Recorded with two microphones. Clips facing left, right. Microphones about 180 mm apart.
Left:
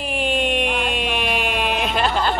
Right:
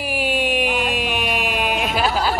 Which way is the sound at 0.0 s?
5° right (ahead or behind).